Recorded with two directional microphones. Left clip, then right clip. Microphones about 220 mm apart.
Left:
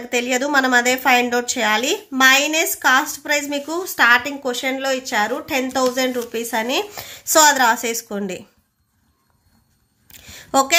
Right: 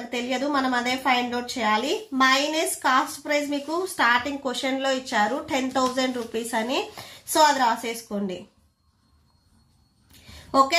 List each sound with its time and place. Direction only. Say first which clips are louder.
0.1 s a woman's voice: left 8 dB; 40° left (ahead or behind)
10.5 s speech: left 4 dB; 40° left (ahead or behind)